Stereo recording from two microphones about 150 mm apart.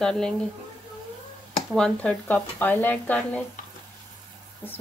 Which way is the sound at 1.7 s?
5° left (ahead or behind).